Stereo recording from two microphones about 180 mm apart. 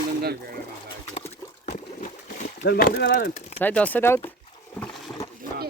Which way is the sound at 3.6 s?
10° left (ahead or behind).